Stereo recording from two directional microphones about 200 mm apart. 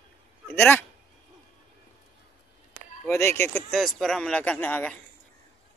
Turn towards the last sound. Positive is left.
turn(degrees=10)  # may be behind; listen again after turning